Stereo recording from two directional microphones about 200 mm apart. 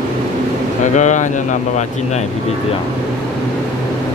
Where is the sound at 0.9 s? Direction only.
40° left (ahead or behind).